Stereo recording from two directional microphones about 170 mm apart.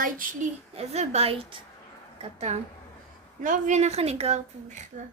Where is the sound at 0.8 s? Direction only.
40° right (ahead or behind).